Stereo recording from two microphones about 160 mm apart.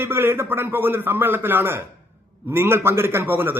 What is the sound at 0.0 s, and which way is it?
A man's voice, 15° right (ahead or behind).